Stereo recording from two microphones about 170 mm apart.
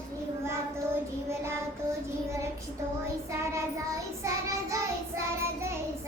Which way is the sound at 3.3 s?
15° right (ahead or behind).